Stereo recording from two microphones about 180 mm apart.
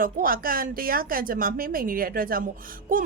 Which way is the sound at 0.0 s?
50° right (ahead or behind).